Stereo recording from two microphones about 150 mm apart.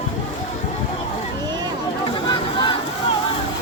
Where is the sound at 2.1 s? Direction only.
30° left (ahead or behind).